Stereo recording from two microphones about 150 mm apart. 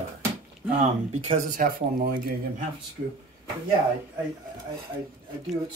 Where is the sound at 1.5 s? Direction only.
70° right (ahead or behind).